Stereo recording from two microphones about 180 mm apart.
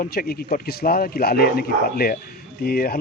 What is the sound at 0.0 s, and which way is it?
Speech, 55° left (ahead or behind).